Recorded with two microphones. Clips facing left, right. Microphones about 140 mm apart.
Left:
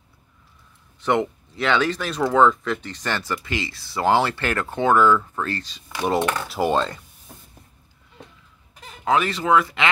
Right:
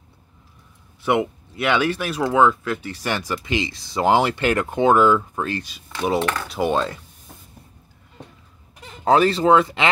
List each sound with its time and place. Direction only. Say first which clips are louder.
1.0 s speech: right 1 dB; 10° right (ahead or behind)
6.5 s speech: even; centre (ahead or behind)
9.0 s speech: right 5 dB; 35° right (ahead or behind)